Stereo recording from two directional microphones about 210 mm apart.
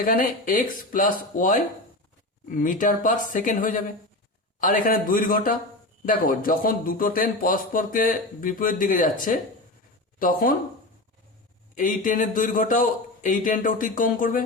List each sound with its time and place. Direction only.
0.0 s speech: 40° left (ahead or behind)
11.7 s speech: 40° left (ahead or behind)